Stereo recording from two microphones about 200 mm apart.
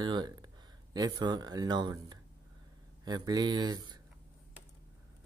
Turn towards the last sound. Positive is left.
turn(degrees=-20)  # may be behind; listen again after turning